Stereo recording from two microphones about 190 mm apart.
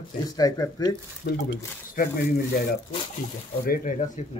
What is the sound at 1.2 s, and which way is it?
Speech, 60° left (ahead or behind).